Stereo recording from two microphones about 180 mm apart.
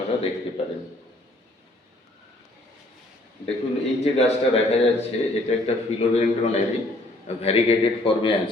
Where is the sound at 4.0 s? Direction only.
35° left (ahead or behind).